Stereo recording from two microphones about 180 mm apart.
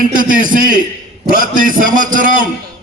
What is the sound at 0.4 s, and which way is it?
A man's voice, 45° right (ahead or behind).